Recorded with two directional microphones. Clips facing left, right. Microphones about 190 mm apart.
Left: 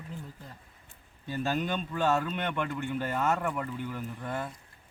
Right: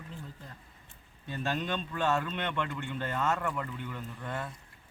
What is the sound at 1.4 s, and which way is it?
Speech, 10° left (ahead or behind).